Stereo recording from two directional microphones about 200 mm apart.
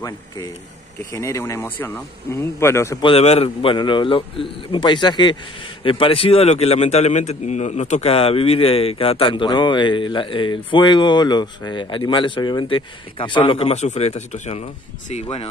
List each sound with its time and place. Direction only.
1.1 s speech: 15° left (ahead or behind)
3.1 s a man's voice: 30° left (ahead or behind)